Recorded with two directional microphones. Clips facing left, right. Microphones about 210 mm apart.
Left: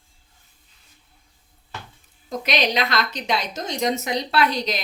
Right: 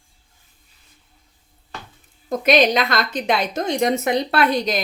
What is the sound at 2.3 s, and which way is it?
A woman's voice, 50° right (ahead or behind).